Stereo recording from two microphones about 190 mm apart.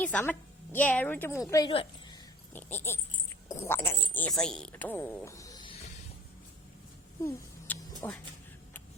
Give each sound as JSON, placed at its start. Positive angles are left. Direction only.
{"t": 0.0, "sound": "speech", "side_deg": 5}
{"t": 1.7, "sound": "a woman's voice", "side_deg": 30}
{"t": 2.5, "sound": "speech", "side_deg": 10}
{"t": 7.3, "sound": "a sound", "side_deg": 10}